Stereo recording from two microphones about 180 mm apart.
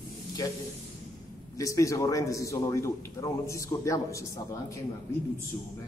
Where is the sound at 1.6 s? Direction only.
15° left (ahead or behind).